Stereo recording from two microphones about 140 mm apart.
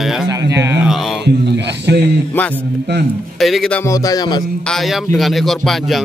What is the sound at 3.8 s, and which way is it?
Music, 25° left (ahead or behind).